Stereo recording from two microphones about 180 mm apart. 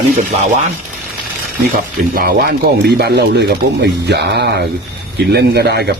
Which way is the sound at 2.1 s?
55° right (ahead or behind).